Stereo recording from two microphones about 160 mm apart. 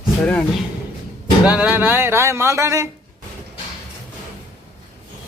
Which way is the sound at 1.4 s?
10° right (ahead or behind).